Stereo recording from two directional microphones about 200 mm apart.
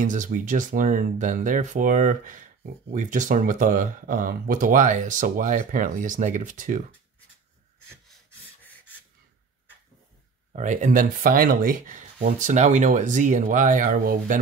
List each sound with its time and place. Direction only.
0.0 s speech: 40° right (ahead or behind)
10.5 s speech: 35° right (ahead or behind)